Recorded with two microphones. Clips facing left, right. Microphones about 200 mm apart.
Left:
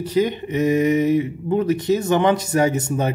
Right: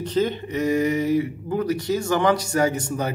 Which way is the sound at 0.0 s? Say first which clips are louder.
Left 3 dB; 10° left (ahead or behind).